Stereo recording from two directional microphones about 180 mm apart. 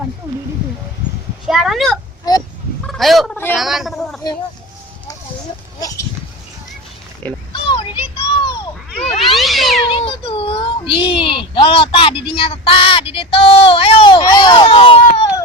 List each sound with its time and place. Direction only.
1.5 s a woman's voice: centre (ahead or behind)
2.3 s fowl: 20° left (ahead or behind)
2.8 s a woman's voice: centre (ahead or behind)
7.5 s a sound: 25° left (ahead or behind)
9.0 s speech: 30° left (ahead or behind)
9.4 s cat: centre (ahead or behind)
9.9 s a sound: 30° left (ahead or behind)
11.0 s speech: 30° left (ahead or behind)